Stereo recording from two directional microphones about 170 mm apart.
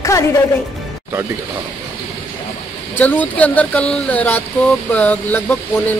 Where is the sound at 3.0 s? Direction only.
10° left (ahead or behind).